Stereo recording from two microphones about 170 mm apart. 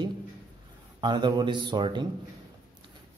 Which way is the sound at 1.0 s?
25° right (ahead or behind).